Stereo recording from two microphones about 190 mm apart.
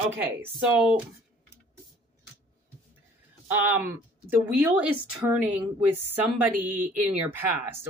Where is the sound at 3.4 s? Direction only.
10° right (ahead or behind).